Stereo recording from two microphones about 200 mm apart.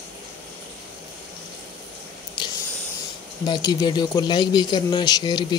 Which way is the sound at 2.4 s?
20° left (ahead or behind).